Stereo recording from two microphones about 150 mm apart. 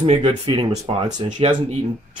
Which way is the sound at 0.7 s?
45° right (ahead or behind).